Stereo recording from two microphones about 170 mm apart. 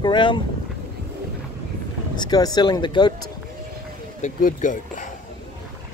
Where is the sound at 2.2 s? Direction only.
25° left (ahead or behind).